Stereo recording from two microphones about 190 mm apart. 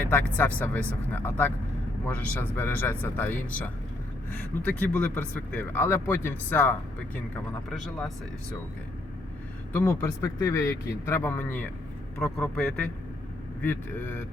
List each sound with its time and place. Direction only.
0.0 s speech: 10° left (ahead or behind)
9.7 s a man's voice: 15° left (ahead or behind)